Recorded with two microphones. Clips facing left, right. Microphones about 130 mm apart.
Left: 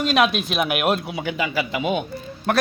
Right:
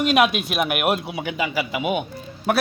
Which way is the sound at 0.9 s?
20° right (ahead or behind).